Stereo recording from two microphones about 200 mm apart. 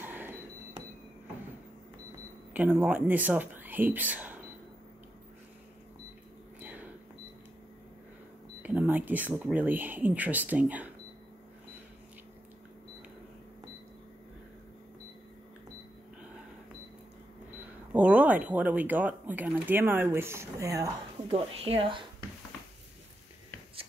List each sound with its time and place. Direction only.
0.0 s a sound: 10° right (ahead or behind)
2.5 s speech: 10° right (ahead or behind)
6.6 s a sound: 10° right (ahead or behind)
8.6 s speech: 10° right (ahead or behind)
17.9 s speech: 10° right (ahead or behind)
21.3 s speech: 30° right (ahead or behind)